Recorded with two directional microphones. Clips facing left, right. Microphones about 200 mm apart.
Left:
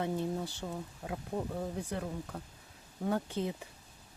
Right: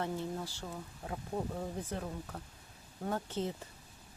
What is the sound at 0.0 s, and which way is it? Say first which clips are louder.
Speech: left 3 dB; 15° left (ahead or behind).